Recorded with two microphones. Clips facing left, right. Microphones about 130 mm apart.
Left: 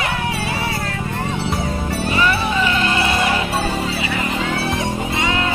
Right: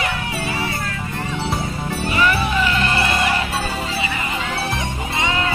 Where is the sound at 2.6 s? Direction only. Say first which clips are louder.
Left 1 dB; 15° left (ahead or behind).